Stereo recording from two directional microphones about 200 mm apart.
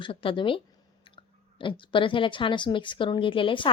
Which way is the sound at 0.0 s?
25° left (ahead or behind).